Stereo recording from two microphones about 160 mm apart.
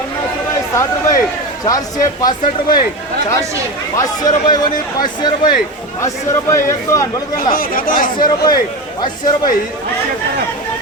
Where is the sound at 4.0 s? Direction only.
25° left (ahead or behind).